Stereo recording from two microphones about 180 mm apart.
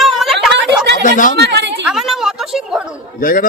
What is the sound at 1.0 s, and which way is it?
Speech, 45° left (ahead or behind).